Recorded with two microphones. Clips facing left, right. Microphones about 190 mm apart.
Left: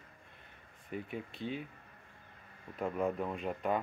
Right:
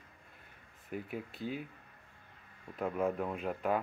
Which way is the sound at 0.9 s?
5° right (ahead or behind).